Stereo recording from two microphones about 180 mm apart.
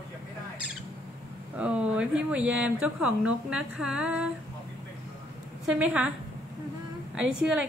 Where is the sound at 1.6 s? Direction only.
5° right (ahead or behind).